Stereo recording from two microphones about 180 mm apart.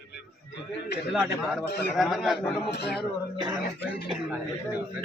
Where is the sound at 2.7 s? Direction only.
70° left (ahead or behind).